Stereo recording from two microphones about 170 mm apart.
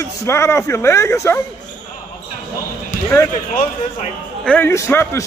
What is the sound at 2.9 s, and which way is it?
Basketball bounce, 45° left (ahead or behind).